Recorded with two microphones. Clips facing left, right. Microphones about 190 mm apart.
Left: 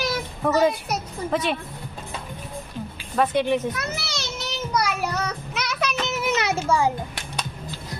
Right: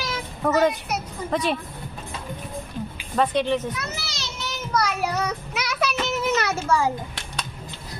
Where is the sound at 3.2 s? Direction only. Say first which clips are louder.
Left 1 dB; 10° left (ahead or behind).